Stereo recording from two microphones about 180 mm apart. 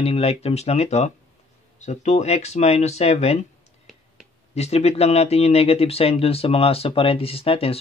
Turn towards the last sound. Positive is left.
turn(degrees=35)  # may be behind; listen again after turning